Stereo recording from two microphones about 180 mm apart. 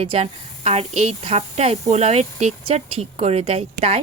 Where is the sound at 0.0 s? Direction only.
35° right (ahead or behind).